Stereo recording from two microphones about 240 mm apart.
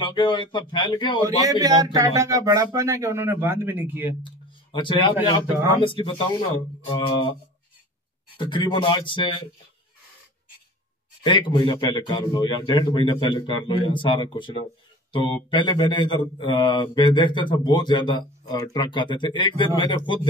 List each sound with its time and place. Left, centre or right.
0.0 s speech: centre
1.2 s speech: centre
4.7 s speech: centre
8.4 s speech: centre
11.2 s speech: centre